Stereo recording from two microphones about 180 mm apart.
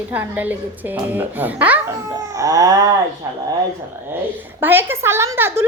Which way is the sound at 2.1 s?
20° right (ahead or behind).